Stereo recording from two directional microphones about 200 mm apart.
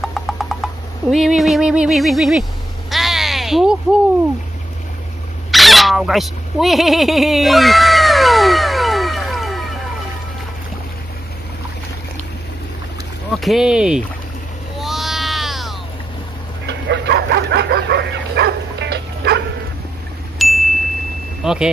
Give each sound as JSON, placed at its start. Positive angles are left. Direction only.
{"t": 0.0, "sound": "a sound", "side_deg": 0}
{"t": 5.5, "sound": "a sound", "side_deg": 0}
{"t": 13.3, "sound": "speech", "side_deg": 0}
{"t": 14.8, "sound": "baby cry", "side_deg": 0}
{"t": 16.6, "sound": "bow-wow", "side_deg": -60}
{"t": 20.3, "sound": "ding", "side_deg": 0}
{"t": 21.4, "sound": "speech", "side_deg": -5}